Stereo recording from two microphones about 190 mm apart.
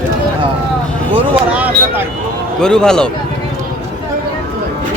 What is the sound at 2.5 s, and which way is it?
Speech, 5° left (ahead or behind).